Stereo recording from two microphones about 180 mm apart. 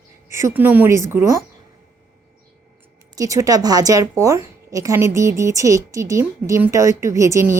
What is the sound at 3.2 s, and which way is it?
A woman's voice, 20° right (ahead or behind).